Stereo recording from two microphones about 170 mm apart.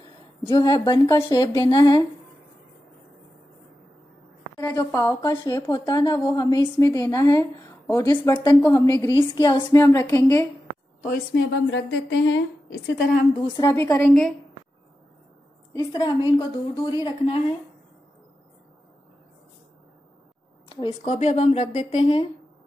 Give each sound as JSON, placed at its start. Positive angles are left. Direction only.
{"t": 0.5, "sound": "speech", "side_deg": 25}
{"t": 4.6, "sound": "a woman's voice", "side_deg": 15}
{"t": 11.3, "sound": "speech", "side_deg": 90}
{"t": 13.6, "sound": "a woman's voice", "side_deg": 15}
{"t": 15.7, "sound": "speech", "side_deg": 25}
{"t": 20.6, "sound": "a woman's voice", "side_deg": 30}